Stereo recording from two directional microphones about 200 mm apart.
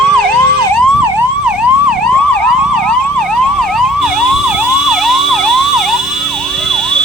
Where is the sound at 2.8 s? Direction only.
Centre (ahead or behind).